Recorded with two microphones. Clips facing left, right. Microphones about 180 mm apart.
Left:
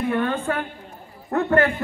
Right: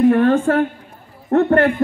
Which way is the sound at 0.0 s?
45° right (ahead or behind).